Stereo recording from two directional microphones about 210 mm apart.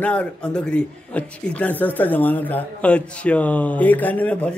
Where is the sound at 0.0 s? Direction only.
5° left (ahead or behind).